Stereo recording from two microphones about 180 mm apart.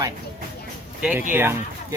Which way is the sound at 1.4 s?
15° right (ahead or behind).